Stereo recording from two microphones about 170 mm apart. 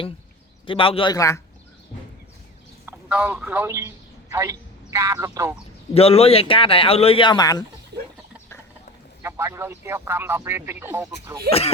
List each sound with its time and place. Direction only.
0.6 s speech: 30° left (ahead or behind)
1.1 s speech: 20° left (ahead or behind)
2.8 s a man's voice: 10° right (ahead or behind)
5.9 s speech: 35° left (ahead or behind)
9.2 s speech: 15° right (ahead or behind)